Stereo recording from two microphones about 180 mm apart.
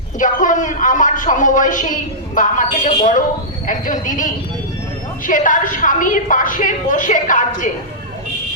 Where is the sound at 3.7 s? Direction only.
45° left (ahead or behind).